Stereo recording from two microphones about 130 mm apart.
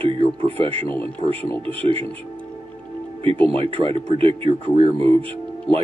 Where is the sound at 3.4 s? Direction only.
45° right (ahead or behind).